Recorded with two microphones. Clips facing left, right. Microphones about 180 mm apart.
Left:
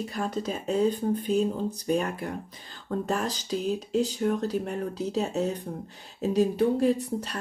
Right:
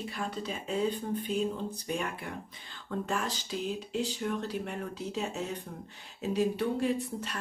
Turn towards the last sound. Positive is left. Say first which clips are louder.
# left 6 dB
turn(degrees=40)  # may be behind; listen again after turning